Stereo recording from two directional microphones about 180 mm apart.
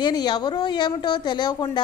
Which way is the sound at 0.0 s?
25° left (ahead or behind).